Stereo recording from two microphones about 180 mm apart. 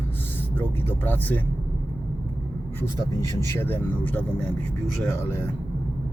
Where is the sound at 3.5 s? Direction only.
10° left (ahead or behind).